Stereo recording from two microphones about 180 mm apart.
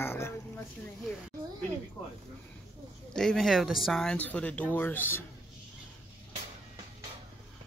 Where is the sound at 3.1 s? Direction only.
5° left (ahead or behind).